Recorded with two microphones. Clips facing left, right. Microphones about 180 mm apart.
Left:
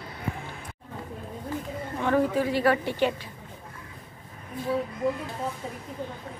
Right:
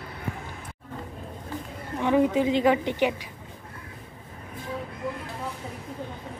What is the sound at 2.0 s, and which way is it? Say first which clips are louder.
Speech: right 2 dB; 15° right (ahead or behind).